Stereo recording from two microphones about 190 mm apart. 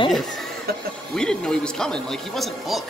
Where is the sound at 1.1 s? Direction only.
5° left (ahead or behind).